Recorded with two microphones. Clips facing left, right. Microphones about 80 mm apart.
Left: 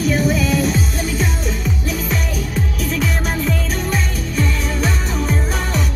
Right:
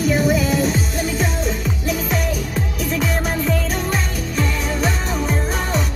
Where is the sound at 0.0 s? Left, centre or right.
Centre.